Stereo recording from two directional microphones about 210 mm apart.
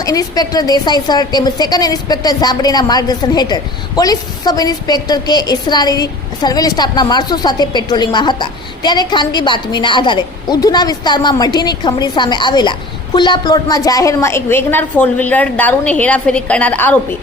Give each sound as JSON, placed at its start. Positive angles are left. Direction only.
{"t": 0.0, "sound": "a woman's voice", "side_deg": 15}